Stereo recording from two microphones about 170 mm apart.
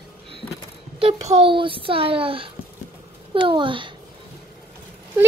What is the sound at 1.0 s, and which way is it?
A child's voice, 35° right (ahead or behind).